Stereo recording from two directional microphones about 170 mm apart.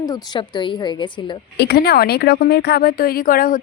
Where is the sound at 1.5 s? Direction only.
70° left (ahead or behind).